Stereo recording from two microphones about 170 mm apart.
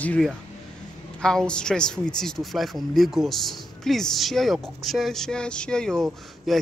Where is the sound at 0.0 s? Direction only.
10° left (ahead or behind).